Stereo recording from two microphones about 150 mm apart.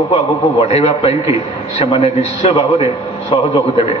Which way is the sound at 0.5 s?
45° left (ahead or behind).